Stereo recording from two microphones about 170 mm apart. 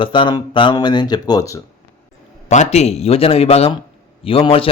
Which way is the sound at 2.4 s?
45° left (ahead or behind).